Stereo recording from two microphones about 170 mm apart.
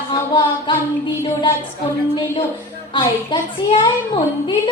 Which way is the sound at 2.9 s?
30° left (ahead or behind).